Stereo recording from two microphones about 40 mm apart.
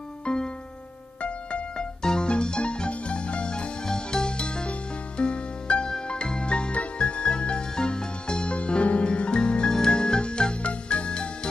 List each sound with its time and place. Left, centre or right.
0.2 s music: left